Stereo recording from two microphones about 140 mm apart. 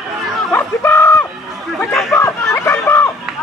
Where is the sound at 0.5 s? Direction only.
15° left (ahead or behind).